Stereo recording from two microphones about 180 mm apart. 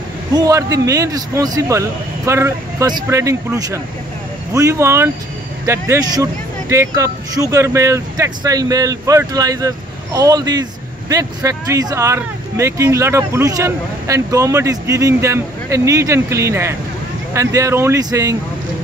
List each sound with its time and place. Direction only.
0.3 s speech: 20° right (ahead or behind)